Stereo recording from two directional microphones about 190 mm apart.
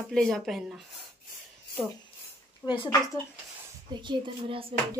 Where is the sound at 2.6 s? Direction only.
25° left (ahead or behind).